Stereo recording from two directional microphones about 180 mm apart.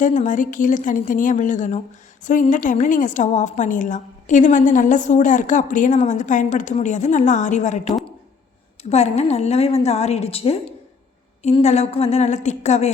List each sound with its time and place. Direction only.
0.0 s a woman's voice: 45° left (ahead or behind)